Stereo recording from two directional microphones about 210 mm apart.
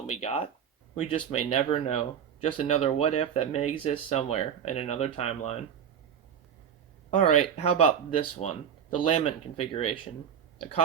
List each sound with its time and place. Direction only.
0.1 s speech: 30° left (ahead or behind)
7.1 s speech: 35° left (ahead or behind)